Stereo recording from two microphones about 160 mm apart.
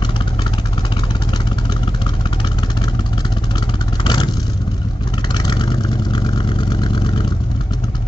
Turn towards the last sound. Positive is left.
turn(degrees=30)  # may be behind; listen again after turning